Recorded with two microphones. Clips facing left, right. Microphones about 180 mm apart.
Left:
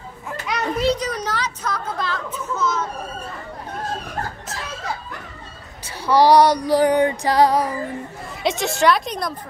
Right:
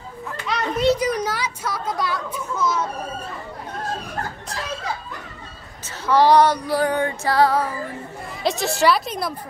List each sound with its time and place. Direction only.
0.5 s children playing: 5° left (ahead or behind)
0.9 s speech: 10° right (ahead or behind)
6.0 s female singing: 10° left (ahead or behind)
8.4 s a woman's voice: centre (ahead or behind)